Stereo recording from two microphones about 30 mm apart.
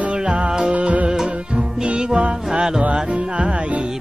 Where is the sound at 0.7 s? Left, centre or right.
Right.